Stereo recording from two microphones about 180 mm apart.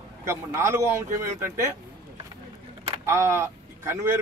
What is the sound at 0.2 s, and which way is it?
A man's voice, 15° right (ahead or behind).